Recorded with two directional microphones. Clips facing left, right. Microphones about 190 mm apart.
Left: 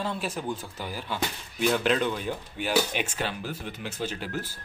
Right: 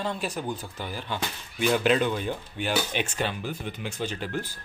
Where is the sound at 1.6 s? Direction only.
5° right (ahead or behind).